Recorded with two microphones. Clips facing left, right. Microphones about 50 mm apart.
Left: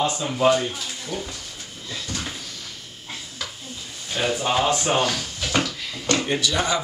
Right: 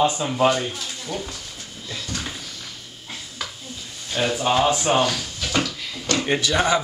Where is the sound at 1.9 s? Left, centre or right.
Centre.